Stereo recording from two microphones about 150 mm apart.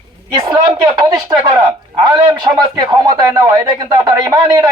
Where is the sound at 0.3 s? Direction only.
30° right (ahead or behind).